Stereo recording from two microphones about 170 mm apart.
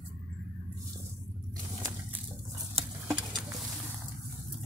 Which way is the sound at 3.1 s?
5° right (ahead or behind).